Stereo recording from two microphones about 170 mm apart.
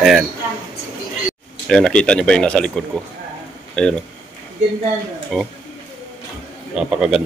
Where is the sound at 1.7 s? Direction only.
5° left (ahead or behind).